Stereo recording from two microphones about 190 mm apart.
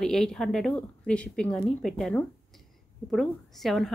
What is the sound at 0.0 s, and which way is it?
A woman's voice, centre (ahead or behind).